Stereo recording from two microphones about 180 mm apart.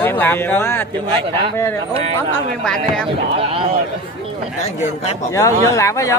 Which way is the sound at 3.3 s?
30° right (ahead or behind).